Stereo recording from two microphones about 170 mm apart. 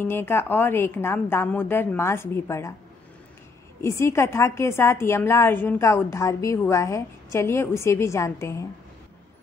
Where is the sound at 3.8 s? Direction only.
15° left (ahead or behind).